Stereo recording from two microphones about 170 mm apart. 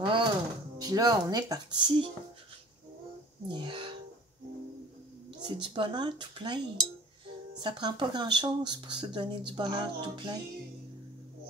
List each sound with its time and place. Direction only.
0.0 s speech: 30° right (ahead or behind)
3.4 s speech: 30° right (ahead or behind)
5.5 s speech: 30° right (ahead or behind)
7.6 s speech: 30° right (ahead or behind)